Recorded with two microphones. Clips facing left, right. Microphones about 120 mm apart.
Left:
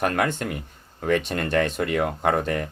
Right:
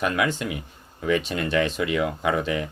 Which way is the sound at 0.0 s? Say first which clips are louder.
Left 1 dB; 55° left (ahead or behind).